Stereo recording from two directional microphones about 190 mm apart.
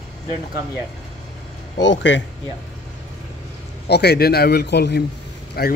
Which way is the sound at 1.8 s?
70° left (ahead or behind).